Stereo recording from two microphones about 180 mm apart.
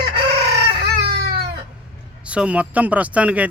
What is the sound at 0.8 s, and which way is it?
Baby cry, 60° right (ahead or behind).